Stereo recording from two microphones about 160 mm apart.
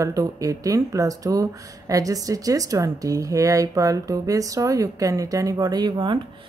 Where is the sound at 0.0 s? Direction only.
20° right (ahead or behind).